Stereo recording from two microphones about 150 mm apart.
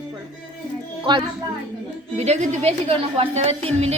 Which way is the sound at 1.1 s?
35° right (ahead or behind).